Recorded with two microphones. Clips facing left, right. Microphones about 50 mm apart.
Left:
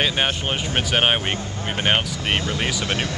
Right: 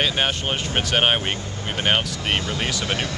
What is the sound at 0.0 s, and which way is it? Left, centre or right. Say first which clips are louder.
Speech: left 1 dB; centre.